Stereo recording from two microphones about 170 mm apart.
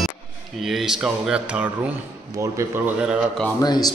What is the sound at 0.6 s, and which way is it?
Speech, centre (ahead or behind).